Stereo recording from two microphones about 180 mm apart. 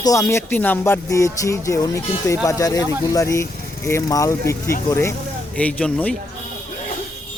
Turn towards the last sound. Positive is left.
turn(degrees=10)  # may be behind; listen again after turning